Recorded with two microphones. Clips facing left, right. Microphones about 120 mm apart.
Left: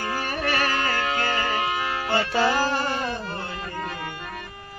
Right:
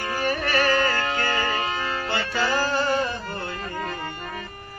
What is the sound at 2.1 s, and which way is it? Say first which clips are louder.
Music: left 4 dB; 30° left (ahead or behind).